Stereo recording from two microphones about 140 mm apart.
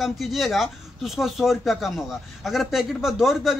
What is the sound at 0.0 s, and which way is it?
Speech, centre (ahead or behind).